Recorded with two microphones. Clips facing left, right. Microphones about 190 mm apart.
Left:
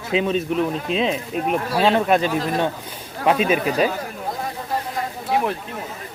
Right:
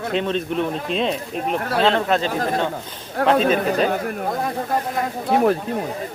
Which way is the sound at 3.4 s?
10° left (ahead or behind).